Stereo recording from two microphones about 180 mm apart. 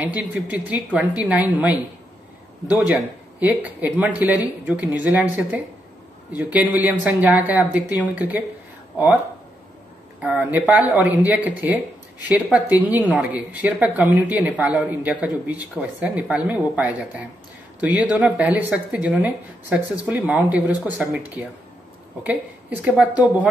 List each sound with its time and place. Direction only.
0.0 s speech: 10° right (ahead or behind)
2.9 s speech: 10° right (ahead or behind)
6.7 s speech: 10° right (ahead or behind)
10.2 s speech: 5° right (ahead or behind)
22.2 s speech: 10° right (ahead or behind)